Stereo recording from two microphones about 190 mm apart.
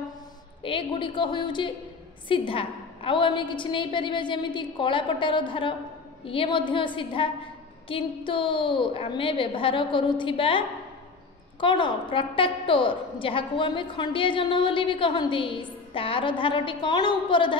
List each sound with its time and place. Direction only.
0.6 s a woman's voice: 25° left (ahead or behind)
11.6 s a woman's voice: 25° left (ahead or behind)